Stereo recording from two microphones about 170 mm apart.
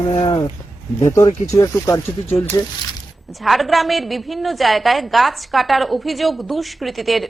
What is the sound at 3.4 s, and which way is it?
A woman's voice, centre (ahead or behind).